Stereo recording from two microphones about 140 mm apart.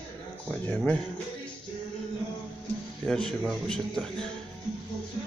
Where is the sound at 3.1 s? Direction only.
5° left (ahead or behind).